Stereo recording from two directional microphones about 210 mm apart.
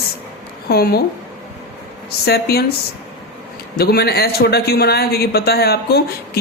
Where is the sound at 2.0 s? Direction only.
50° left (ahead or behind).